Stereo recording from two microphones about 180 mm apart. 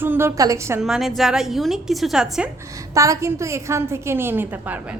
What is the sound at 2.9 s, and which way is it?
A woman's voice, 15° right (ahead or behind).